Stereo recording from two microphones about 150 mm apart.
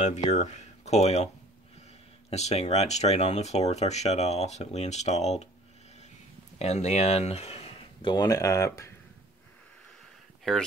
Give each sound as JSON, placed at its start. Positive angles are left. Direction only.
{"t": 0.3, "sound": "speech", "side_deg": 50}
{"t": 6.6, "sound": "speech", "side_deg": 50}